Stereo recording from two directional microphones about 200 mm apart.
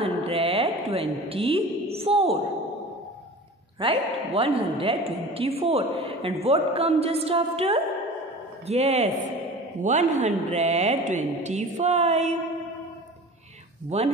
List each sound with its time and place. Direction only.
0.0 s a sound: 30° right (ahead or behind)
3.8 s a woman's voice: 25° right (ahead or behind)
13.8 s speech: 30° right (ahead or behind)